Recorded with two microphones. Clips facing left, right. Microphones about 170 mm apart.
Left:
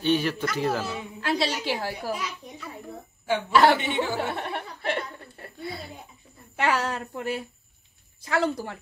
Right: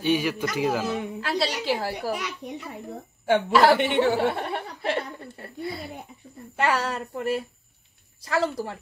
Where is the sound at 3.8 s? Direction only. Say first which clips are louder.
Right 6 dB; 65° right (ahead or behind).